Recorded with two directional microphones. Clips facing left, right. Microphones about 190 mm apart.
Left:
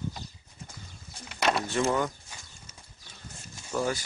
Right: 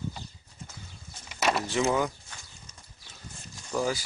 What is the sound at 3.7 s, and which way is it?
Speech, 5° right (ahead or behind).